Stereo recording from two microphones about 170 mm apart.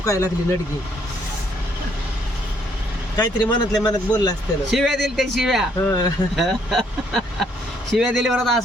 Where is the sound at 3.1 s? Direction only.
25° left (ahead or behind).